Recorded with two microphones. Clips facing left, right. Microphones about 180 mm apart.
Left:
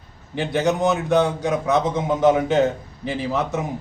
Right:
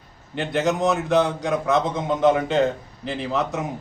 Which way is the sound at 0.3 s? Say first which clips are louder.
Left 2 dB; centre (ahead or behind).